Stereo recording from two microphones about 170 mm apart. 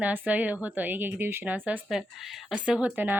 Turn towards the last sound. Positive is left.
turn(degrees=-10)  # may be behind; listen again after turning